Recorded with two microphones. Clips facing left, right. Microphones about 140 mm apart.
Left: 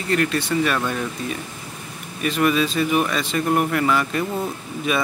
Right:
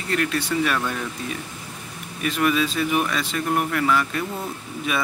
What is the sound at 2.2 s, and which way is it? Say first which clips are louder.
Speech: left 2 dB; centre (ahead or behind).